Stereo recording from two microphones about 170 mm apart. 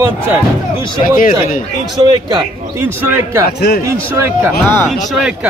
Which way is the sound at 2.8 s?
15° right (ahead or behind).